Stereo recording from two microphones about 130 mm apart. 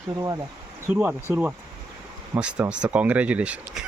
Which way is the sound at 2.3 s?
10° right (ahead or behind).